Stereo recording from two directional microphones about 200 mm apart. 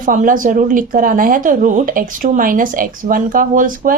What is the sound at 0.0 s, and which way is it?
A woman's voice, 40° right (ahead or behind).